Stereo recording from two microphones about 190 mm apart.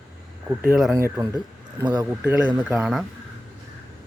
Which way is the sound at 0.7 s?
5° right (ahead or behind).